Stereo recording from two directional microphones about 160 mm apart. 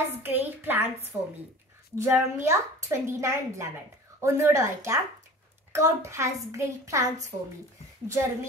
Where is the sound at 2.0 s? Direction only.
15° right (ahead or behind).